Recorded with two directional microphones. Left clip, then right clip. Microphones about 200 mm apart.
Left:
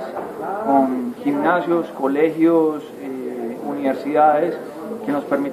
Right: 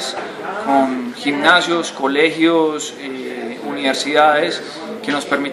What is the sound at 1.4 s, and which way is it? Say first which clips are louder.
A man's voice: right 5 dB; 10° right (ahead or behind).